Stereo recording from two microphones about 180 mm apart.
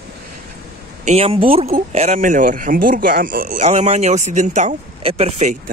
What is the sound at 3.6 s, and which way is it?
Speech, 40° right (ahead or behind).